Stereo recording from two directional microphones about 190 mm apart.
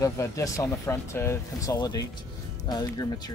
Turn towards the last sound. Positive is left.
turn(degrees=20)  # may be behind; listen again after turning